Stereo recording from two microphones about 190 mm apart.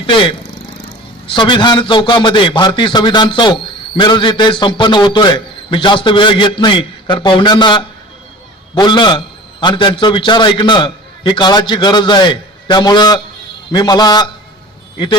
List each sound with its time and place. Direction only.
0.0 s a man's voice: 25° left (ahead or behind)